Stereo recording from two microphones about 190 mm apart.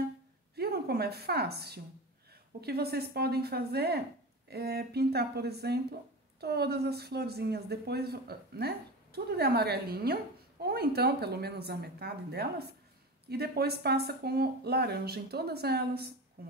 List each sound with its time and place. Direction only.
0.6 s a woman's voice: 55° right (ahead or behind)